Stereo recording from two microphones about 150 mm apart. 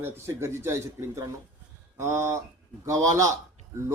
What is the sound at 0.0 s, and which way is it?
A man's voice, 15° right (ahead or behind).